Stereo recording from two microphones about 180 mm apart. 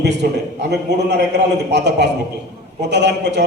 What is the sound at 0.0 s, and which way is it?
A man's voice, 70° right (ahead or behind).